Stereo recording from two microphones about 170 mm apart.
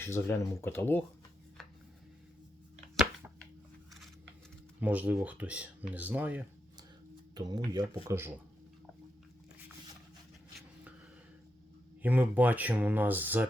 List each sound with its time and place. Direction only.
0.0 s speech: 15° left (ahead or behind)
4.8 s speech: 10° right (ahead or behind)
7.3 s speech: 25° right (ahead or behind)
12.0 s speech: 10° right (ahead or behind)